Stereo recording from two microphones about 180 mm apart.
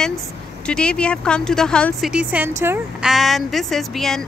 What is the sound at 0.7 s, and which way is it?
Speech, 5° left (ahead or behind).